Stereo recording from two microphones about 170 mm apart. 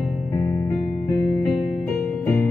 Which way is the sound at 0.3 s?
15° left (ahead or behind).